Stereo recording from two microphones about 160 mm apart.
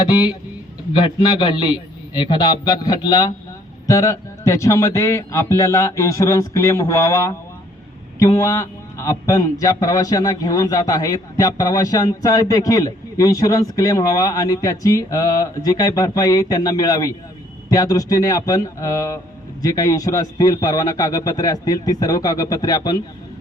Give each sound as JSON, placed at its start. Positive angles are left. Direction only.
{"t": 0.9, "sound": "a man's voice", "side_deg": 30}